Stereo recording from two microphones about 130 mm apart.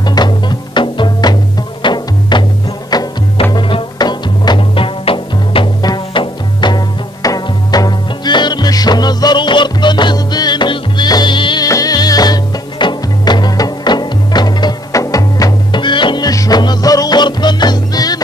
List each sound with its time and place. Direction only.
0.0 s music: 35° left (ahead or behind)